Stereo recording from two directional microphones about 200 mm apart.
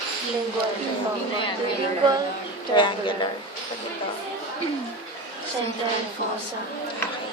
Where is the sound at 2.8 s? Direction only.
25° left (ahead or behind).